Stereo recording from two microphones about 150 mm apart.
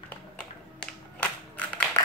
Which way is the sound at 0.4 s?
10° left (ahead or behind).